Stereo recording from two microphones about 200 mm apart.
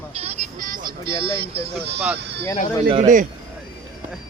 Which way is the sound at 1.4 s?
30° right (ahead or behind).